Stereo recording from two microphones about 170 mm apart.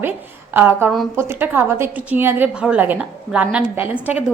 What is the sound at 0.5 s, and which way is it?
A woman's voice, 10° right (ahead or behind).